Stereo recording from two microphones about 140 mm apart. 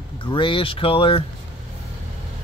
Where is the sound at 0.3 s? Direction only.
35° left (ahead or behind).